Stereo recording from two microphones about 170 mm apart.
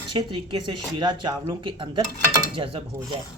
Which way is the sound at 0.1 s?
30° right (ahead or behind).